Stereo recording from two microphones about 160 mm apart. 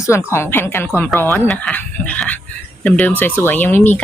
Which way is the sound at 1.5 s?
10° left (ahead or behind).